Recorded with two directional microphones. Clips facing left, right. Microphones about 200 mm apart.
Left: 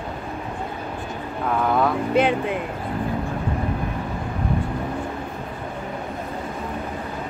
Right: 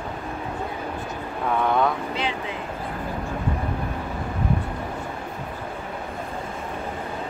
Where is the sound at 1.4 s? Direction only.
Centre (ahead or behind).